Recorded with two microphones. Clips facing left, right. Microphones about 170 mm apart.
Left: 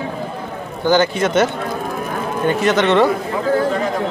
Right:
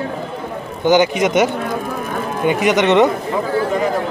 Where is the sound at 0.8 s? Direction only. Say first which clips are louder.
Right 2 dB; 15° right (ahead or behind).